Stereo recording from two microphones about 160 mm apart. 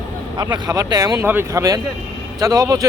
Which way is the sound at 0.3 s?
25° right (ahead or behind).